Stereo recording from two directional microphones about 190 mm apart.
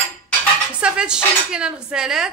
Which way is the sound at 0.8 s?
5° right (ahead or behind).